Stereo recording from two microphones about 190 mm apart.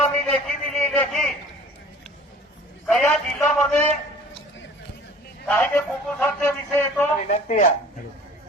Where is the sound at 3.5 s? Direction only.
Centre (ahead or behind).